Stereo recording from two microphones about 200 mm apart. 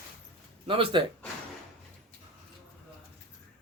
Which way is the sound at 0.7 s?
25° right (ahead or behind).